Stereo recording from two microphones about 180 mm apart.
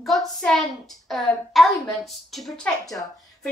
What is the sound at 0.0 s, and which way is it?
A woman's voice, centre (ahead or behind).